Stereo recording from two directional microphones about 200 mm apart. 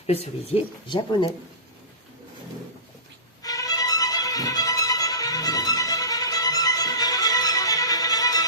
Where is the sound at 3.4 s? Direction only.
20° left (ahead or behind).